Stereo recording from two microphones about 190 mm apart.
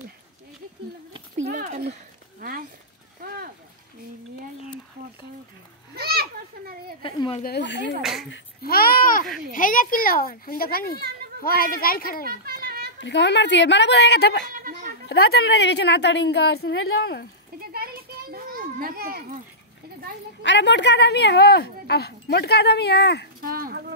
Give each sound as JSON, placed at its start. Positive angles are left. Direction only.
{"t": 1.5, "sound": "a sound", "side_deg": -45}
{"t": 2.4, "sound": "speech", "side_deg": -50}
{"t": 5.9, "sound": "a child's voice", "side_deg": -55}
{"t": 7.0, "sound": "a woman's voice", "side_deg": 25}
{"t": 7.4, "sound": "a woman's voice", "side_deg": 65}
{"t": 8.0, "sound": "speech", "side_deg": 0}
{"t": 8.6, "sound": "a child's voice", "side_deg": 50}
{"t": 12.3, "sound": "children playing", "side_deg": -55}
{"t": 13.0, "sound": "a woman's voice", "side_deg": 65}
{"t": 14.5, "sound": "goat", "side_deg": -50}
{"t": 15.0, "sound": "speech", "side_deg": 55}
{"t": 18.3, "sound": "children playing", "side_deg": -50}
{"t": 20.4, "sound": "speech", "side_deg": 65}
{"t": 23.4, "sound": "speech", "side_deg": -50}